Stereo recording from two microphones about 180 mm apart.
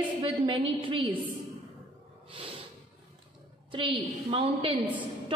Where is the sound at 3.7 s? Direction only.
30° right (ahead or behind).